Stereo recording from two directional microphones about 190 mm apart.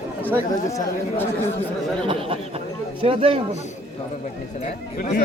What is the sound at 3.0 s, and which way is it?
Speech, 30° right (ahead or behind).